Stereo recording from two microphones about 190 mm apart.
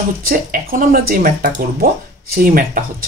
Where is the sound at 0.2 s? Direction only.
50° right (ahead or behind).